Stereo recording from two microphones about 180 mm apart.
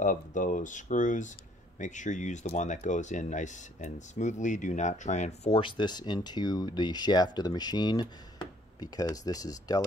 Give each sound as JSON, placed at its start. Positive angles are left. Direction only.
{"t": 0.0, "sound": "speech", "side_deg": 45}